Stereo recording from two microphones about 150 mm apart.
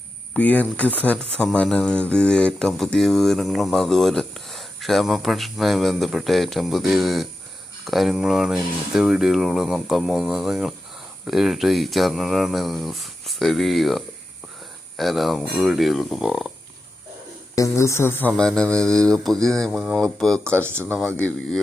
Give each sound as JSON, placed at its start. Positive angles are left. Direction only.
{"t": 0.3, "sound": "speech", "side_deg": 10}
{"t": 17.5, "sound": "speech", "side_deg": 20}
{"t": 20.4, "sound": "speech", "side_deg": -15}
{"t": 21.2, "sound": "speech", "side_deg": 10}